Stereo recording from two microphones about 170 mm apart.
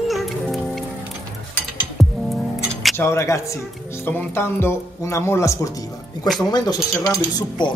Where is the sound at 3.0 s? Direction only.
15° left (ahead or behind).